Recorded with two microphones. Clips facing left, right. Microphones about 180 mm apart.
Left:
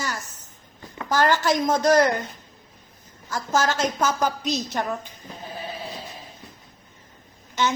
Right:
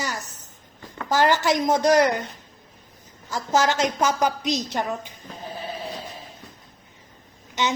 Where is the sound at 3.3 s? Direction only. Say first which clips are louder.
Right 2 dB; 20° right (ahead or behind).